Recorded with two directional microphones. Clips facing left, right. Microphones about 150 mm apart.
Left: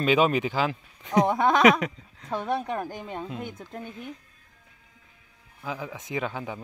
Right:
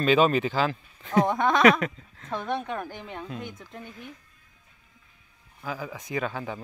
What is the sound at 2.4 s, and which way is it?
Speech, 35° left (ahead or behind).